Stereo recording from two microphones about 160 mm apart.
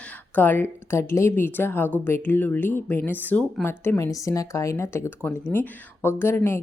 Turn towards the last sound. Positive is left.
turn(degrees=15)  # may be behind; listen again after turning